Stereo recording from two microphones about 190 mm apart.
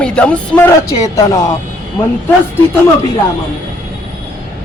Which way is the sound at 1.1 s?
15° left (ahead or behind).